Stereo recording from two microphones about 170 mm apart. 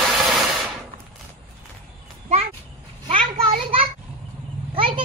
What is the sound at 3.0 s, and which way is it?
Children playing, 30° right (ahead or behind).